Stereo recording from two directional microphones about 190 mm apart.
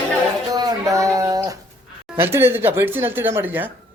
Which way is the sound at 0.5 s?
20° right (ahead or behind).